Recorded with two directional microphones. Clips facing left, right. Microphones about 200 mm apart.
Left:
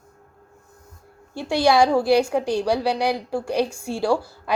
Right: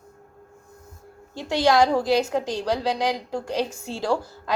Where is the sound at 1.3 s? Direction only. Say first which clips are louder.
Left 2 dB; 10° left (ahead or behind).